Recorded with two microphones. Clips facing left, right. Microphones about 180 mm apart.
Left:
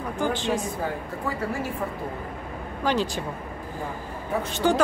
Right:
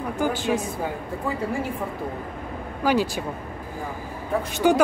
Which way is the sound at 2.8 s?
10° right (ahead or behind).